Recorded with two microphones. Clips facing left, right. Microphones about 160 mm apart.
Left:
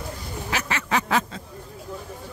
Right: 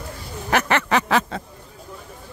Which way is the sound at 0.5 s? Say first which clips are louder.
Right 7 dB; 60° right (ahead or behind).